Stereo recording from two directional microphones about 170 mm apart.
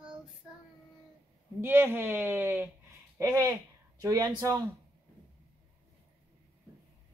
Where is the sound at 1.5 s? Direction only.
10° right (ahead or behind).